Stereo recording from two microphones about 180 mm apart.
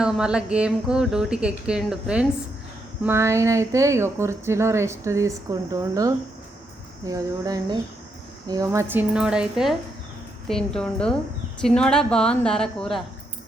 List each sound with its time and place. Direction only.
0.0 s a woman's voice: 5° right (ahead or behind)